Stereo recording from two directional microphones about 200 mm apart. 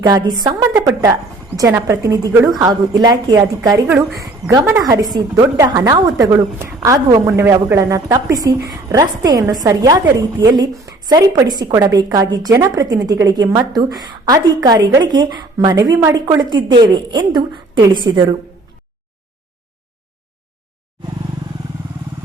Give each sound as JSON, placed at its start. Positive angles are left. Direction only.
{"t": 0.4, "sound": "a woman's voice", "side_deg": -15}
{"t": 3.8, "sound": "a woman's voice", "side_deg": -5}